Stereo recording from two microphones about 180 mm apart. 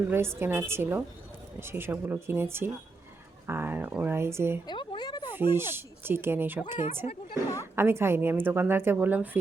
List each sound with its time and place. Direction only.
0.1 s a woman's voice: 15° right (ahead or behind)
4.6 s a sound: 25° left (ahead or behind)
5.3 s a woman's voice: 10° right (ahead or behind)